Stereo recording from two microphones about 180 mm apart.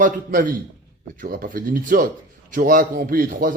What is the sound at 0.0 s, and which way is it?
Speech, 50° right (ahead or behind).